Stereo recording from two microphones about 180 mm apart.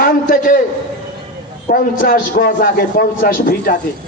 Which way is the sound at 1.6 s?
50° left (ahead or behind).